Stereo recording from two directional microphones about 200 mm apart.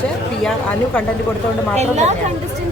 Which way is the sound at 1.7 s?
35° right (ahead or behind).